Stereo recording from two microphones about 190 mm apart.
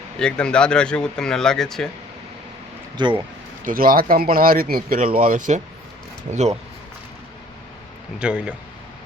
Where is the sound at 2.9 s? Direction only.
25° right (ahead or behind).